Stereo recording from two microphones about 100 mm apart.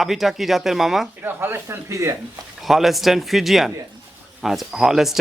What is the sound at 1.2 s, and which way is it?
Speech, 25° right (ahead or behind).